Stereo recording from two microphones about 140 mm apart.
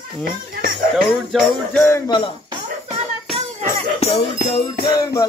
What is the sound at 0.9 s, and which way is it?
Speech, 5° left (ahead or behind).